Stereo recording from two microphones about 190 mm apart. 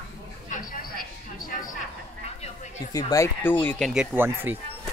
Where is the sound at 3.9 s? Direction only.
5° right (ahead or behind).